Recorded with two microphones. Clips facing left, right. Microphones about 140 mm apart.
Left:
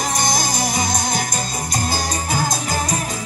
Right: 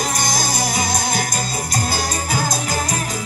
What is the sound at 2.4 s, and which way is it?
Music, 20° left (ahead or behind).